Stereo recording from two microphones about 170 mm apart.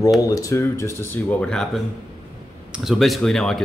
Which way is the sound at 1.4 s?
5° left (ahead or behind).